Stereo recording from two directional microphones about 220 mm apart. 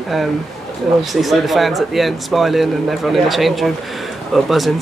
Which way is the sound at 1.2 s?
Centre (ahead or behind).